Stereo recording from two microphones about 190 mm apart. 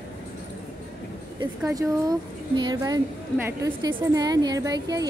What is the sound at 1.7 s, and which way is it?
A woman's voice, 20° right (ahead or behind).